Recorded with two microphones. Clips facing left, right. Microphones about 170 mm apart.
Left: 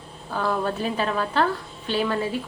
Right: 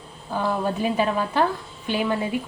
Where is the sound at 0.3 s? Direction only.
10° right (ahead or behind).